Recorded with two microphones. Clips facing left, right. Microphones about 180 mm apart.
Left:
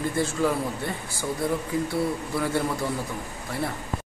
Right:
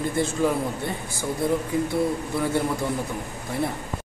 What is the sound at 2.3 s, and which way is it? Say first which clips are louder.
Speech: right 1 dB; 15° right (ahead or behind).